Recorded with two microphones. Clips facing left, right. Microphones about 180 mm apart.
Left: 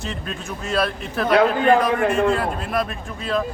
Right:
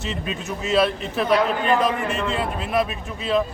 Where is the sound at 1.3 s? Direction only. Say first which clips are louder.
Left 5 dB; 60° left (ahead or behind).